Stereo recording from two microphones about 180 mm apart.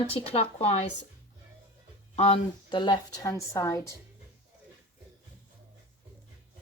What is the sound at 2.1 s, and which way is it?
A woman's voice, 35° left (ahead or behind).